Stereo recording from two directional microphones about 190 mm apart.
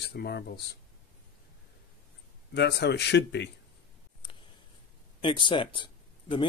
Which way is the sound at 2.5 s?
60° left (ahead or behind).